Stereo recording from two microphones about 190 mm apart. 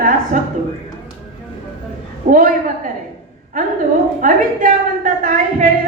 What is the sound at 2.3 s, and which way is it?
Speech, 45° right (ahead or behind).